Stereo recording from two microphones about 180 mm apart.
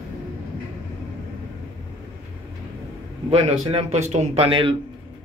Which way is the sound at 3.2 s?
35° right (ahead or behind).